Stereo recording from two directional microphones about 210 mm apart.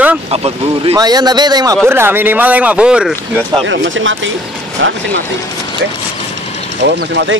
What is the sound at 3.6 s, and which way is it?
Speech, 60° right (ahead or behind).